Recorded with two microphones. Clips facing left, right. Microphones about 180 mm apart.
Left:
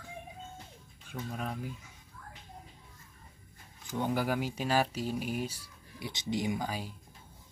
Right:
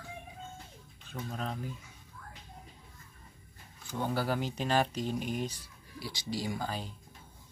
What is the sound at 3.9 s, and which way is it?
Speech, 15° left (ahead or behind).